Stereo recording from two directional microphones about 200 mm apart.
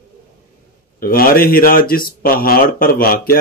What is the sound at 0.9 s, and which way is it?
Speech, 45° left (ahead or behind).